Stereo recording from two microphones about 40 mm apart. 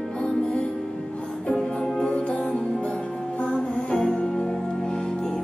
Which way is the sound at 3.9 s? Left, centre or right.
Left.